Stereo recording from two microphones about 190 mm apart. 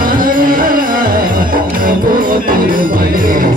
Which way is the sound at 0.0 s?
45° right (ahead or behind).